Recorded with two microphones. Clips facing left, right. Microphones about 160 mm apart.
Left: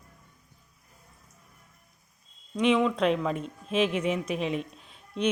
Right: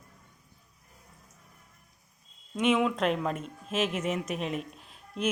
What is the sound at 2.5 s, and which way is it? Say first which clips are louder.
Speech: left 2 dB; 5° right (ahead or behind).